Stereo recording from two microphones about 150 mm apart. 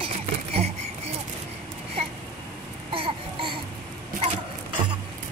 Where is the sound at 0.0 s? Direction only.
40° right (ahead or behind).